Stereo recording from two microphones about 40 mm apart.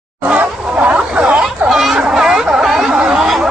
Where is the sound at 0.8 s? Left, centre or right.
Right.